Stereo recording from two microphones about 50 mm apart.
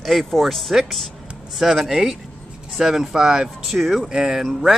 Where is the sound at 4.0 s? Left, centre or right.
Centre.